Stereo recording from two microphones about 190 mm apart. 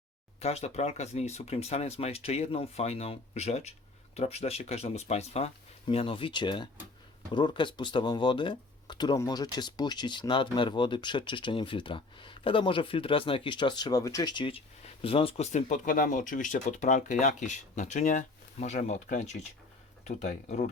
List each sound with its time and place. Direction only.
0.3 s speech: 35° left (ahead or behind)